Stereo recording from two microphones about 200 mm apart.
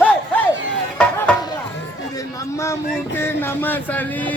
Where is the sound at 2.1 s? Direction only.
15° left (ahead or behind).